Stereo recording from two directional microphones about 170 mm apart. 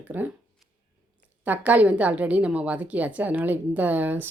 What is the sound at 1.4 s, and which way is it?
A woman's voice, 10° right (ahead or behind).